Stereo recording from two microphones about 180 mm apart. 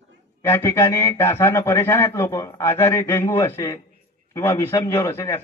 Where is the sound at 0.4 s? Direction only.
15° left (ahead or behind).